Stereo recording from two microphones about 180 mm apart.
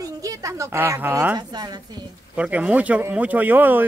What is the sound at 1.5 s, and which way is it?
Speech, 20° right (ahead or behind).